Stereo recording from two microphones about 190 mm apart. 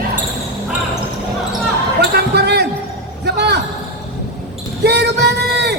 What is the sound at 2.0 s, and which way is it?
Basketball bounce, 60° right (ahead or behind).